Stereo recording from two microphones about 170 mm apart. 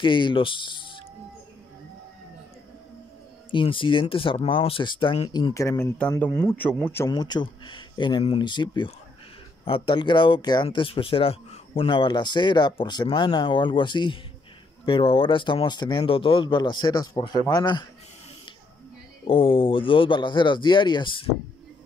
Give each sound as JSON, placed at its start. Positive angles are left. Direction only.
{"t": 0.0, "sound": "speech", "side_deg": 30}
{"t": 3.5, "sound": "speech", "side_deg": 30}
{"t": 5.3, "sound": "speech", "side_deg": 20}
{"t": 7.1, "sound": "speech", "side_deg": 25}
{"t": 19.2, "sound": "speech", "side_deg": 30}